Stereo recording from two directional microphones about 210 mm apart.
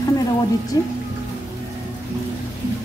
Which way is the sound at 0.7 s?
15° left (ahead or behind).